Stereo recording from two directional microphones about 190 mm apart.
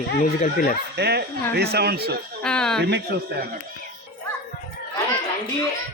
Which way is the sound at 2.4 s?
5° left (ahead or behind).